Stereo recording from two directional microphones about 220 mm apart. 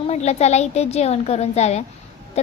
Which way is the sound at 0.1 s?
30° left (ahead or behind).